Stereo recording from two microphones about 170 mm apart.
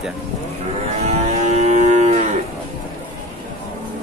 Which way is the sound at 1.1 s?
40° right (ahead or behind).